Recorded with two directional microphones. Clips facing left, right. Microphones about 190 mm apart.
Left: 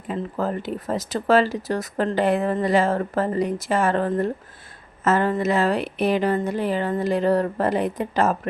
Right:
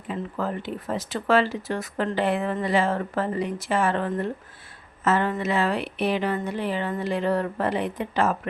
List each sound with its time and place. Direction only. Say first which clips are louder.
0.1 s speech: left 3 dB; 40° left (ahead or behind)